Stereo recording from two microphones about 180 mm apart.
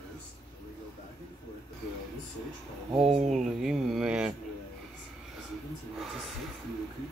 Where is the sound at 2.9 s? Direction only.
35° right (ahead or behind).